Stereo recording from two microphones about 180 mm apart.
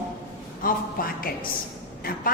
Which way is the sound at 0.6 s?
55° left (ahead or behind).